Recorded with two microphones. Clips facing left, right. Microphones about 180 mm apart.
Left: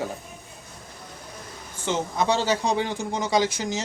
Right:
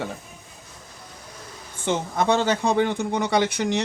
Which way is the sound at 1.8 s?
55° right (ahead or behind).